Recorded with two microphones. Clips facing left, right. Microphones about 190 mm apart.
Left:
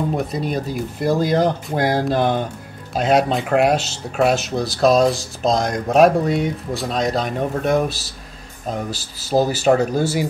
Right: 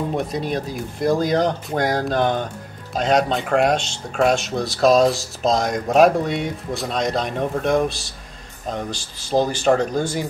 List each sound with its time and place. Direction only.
0.2 s speech: centre (ahead or behind)